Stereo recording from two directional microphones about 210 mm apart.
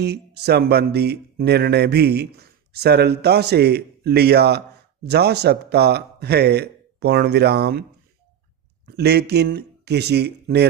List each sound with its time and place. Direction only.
0.0 s speech: 50° right (ahead or behind)
8.9 s speech: 50° right (ahead or behind)